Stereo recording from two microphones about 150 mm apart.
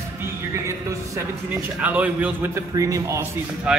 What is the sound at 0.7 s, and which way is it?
Speech, 20° right (ahead or behind).